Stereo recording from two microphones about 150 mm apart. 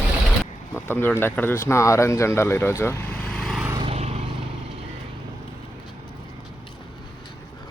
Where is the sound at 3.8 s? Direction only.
40° right (ahead or behind).